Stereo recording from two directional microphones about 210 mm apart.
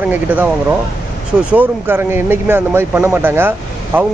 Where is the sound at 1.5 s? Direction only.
10° right (ahead or behind).